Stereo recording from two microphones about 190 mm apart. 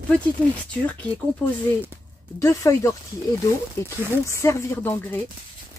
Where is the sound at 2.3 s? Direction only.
15° left (ahead or behind).